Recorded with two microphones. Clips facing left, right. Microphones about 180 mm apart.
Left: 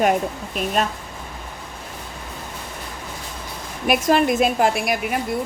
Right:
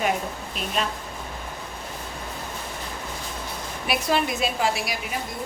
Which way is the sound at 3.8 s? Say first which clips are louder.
Left 7 dB; 50° left (ahead or behind).